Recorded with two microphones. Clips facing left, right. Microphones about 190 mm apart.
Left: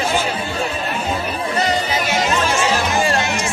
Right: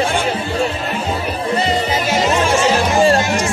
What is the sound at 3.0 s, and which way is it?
Music, 40° right (ahead or behind).